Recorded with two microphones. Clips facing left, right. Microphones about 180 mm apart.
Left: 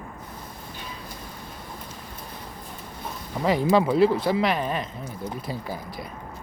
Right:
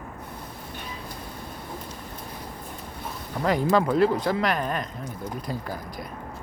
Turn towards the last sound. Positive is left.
turn(degrees=5)  # may be behind; listen again after turning